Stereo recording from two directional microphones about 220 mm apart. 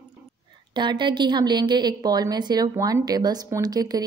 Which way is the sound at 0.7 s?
20° right (ahead or behind).